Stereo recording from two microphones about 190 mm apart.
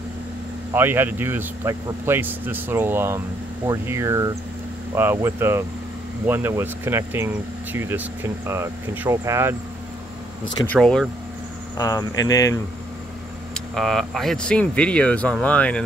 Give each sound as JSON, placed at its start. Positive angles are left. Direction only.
{"t": 0.7, "sound": "speech", "side_deg": -10}
{"t": 10.7, "sound": "speech", "side_deg": 5}
{"t": 11.7, "sound": "speech", "side_deg": 20}
{"t": 13.7, "sound": "speech", "side_deg": 0}